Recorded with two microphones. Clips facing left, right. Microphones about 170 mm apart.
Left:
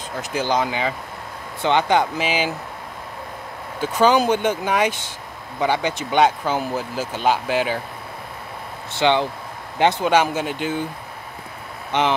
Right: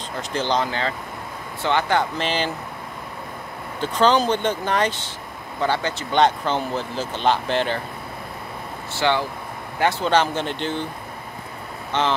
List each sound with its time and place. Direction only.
0.2 s speech: 10° left (ahead or behind)
3.8 s speech: 10° left (ahead or behind)
8.9 s speech: 20° left (ahead or behind)
11.9 s speech: 15° left (ahead or behind)